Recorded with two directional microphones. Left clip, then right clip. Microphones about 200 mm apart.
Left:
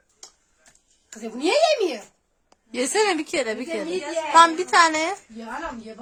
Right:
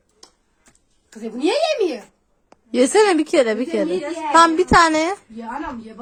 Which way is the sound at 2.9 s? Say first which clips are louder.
Right 6 dB; 15° right (ahead or behind).